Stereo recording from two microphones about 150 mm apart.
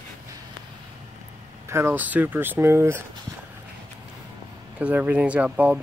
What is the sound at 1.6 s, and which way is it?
Speech, 15° right (ahead or behind).